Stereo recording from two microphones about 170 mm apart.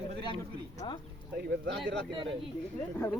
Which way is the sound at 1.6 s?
90° right.